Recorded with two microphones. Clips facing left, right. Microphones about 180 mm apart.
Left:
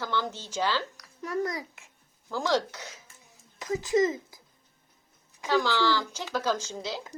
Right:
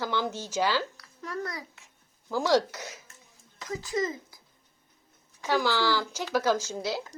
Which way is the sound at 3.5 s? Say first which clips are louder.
Left 6 dB; 15° left (ahead or behind).